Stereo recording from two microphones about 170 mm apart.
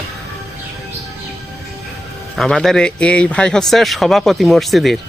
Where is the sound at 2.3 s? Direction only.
Centre (ahead or behind).